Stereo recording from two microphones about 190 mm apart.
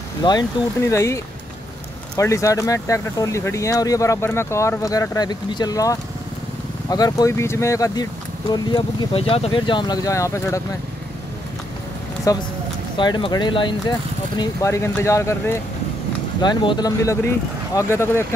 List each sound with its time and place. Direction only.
0.2 s speech: 20° left (ahead or behind)
12.3 s speech: 15° left (ahead or behind)